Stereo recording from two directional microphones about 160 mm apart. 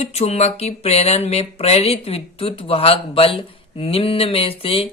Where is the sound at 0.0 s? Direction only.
40° left (ahead or behind).